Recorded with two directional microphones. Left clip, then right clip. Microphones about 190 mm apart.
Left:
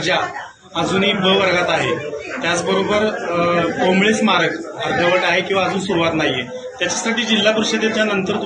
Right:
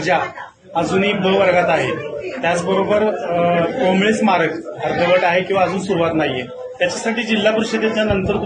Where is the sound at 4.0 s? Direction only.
20° right (ahead or behind).